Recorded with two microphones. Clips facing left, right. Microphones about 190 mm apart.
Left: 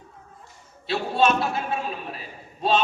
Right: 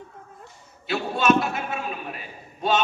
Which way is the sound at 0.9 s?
30° left (ahead or behind).